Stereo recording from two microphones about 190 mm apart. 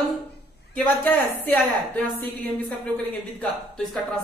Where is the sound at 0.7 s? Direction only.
10° left (ahead or behind).